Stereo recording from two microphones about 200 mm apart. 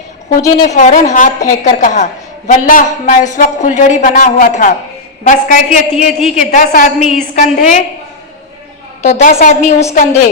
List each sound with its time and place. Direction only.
0.3 s a man's voice: 40° left (ahead or behind)
9.0 s a woman's voice: 35° left (ahead or behind)